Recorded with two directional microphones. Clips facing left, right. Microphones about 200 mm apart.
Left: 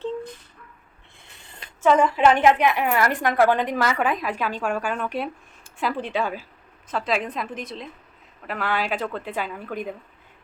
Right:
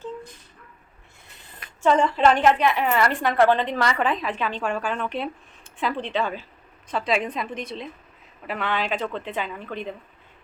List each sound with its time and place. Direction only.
1.9 s a woman's voice: 10° left (ahead or behind)